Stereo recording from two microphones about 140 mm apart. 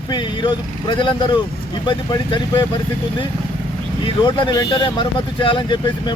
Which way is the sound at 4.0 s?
35° left (ahead or behind).